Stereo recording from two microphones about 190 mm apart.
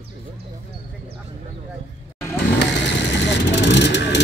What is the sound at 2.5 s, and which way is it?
Vehicle, 70° left (ahead or behind).